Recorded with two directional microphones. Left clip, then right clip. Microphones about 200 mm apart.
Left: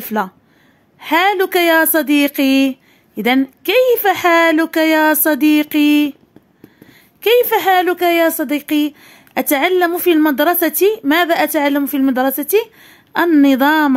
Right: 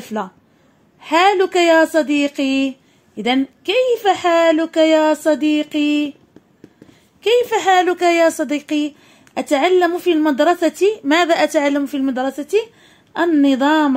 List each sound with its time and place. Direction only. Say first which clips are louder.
0.0 s a woman's voice: left 5 dB; 30° left (ahead or behind)
7.2 s a woman's voice: left 3 dB; 30° left (ahead or behind)
11.8 s speech: left 4 dB; 30° left (ahead or behind)